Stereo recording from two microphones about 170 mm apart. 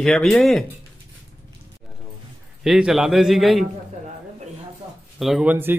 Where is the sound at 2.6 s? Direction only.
Centre (ahead or behind).